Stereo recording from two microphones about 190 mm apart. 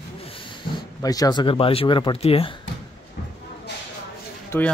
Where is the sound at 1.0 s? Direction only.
20° left (ahead or behind).